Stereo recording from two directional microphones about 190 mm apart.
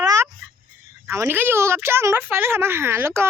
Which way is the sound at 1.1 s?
15° right (ahead or behind).